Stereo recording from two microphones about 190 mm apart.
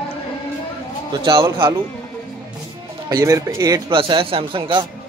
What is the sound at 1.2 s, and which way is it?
Speech, 20° right (ahead or behind).